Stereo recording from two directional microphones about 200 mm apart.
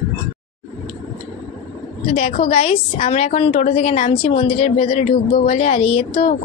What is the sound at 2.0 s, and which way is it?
A woman's voice, 35° left (ahead or behind).